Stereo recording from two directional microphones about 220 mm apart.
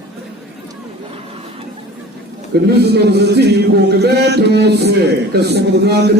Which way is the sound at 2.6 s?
50° right (ahead or behind).